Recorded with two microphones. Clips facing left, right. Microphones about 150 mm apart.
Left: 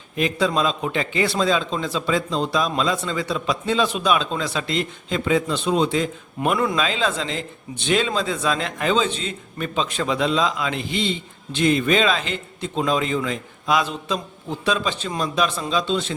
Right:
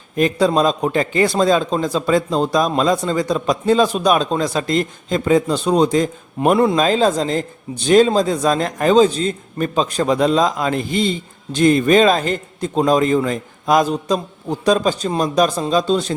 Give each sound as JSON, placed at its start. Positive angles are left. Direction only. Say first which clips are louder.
{"t": 0.2, "sound": "a man's voice", "louder": "right 6 dB", "side_deg": -40}